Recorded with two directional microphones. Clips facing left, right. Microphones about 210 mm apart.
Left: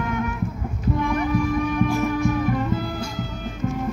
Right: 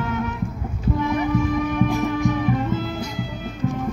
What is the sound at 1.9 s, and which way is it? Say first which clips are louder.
Music: even; 20° right (ahead or behind).